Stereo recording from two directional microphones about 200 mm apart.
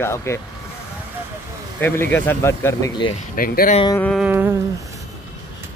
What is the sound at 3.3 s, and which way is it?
Speech, 45° left (ahead or behind).